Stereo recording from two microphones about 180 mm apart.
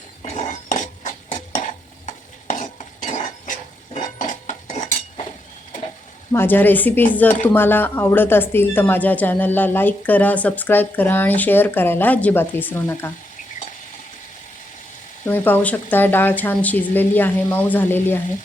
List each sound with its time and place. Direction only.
0.3 s a sound: 45° left (ahead or behind)
2.0 s stir: 40° left (ahead or behind)
3.9 s cutlery: 45° left (ahead or behind)
6.3 s a woman's voice: 10° left (ahead or behind)
15.3 s a woman's voice: 10° left (ahead or behind)